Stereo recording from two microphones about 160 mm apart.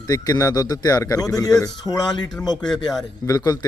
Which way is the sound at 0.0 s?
25° left (ahead or behind).